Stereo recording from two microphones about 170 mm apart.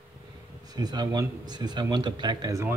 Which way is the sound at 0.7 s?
25° right (ahead or behind).